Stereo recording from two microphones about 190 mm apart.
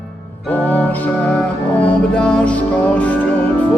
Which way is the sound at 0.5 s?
10° left (ahead or behind).